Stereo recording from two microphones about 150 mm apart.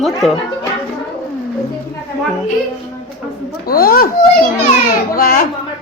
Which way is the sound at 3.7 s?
85° left.